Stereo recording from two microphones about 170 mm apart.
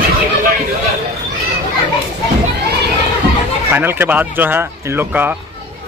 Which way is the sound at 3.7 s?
10° right (ahead or behind).